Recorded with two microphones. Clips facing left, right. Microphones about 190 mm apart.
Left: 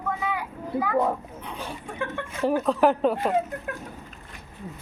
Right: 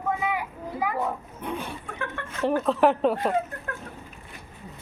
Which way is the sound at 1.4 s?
55° right (ahead or behind).